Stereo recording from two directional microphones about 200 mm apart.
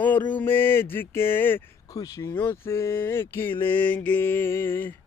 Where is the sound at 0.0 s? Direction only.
10° left (ahead or behind).